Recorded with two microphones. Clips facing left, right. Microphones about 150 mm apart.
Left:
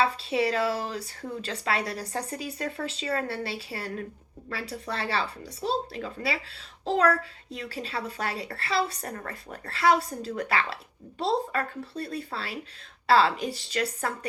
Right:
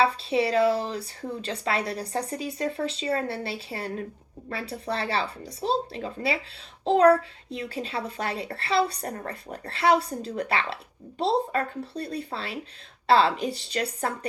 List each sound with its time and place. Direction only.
0.0 s a woman's voice: 30° right (ahead or behind)